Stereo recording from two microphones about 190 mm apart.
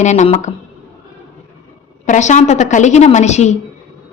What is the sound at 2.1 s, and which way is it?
Speech, 40° left (ahead or behind).